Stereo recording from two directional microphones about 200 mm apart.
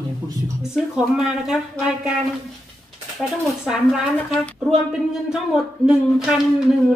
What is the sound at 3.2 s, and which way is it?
Speech, 5° right (ahead or behind).